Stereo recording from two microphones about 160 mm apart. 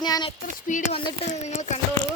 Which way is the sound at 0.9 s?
40° left (ahead or behind).